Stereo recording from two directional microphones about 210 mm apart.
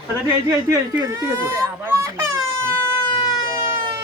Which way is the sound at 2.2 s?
70° right (ahead or behind).